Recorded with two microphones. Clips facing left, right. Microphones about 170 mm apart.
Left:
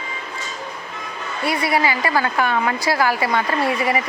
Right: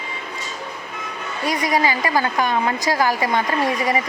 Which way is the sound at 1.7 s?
15° right (ahead or behind).